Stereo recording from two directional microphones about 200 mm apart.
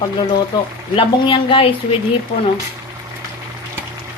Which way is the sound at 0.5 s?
20° left (ahead or behind).